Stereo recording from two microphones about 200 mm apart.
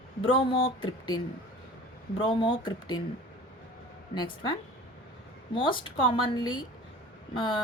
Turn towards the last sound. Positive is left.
turn(degrees=25)  # may be behind; listen again after turning